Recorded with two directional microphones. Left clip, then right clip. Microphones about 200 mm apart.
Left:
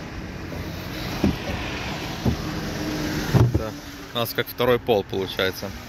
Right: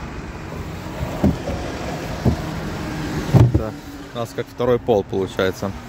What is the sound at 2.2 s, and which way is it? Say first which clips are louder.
Vehicle: right 5 dB; 45° right (ahead or behind).